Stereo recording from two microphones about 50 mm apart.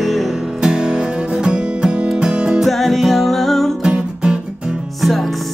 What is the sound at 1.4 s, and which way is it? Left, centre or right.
Music, centre.